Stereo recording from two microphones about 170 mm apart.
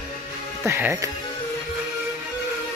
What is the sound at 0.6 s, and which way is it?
Speech, 15° right (ahead or behind).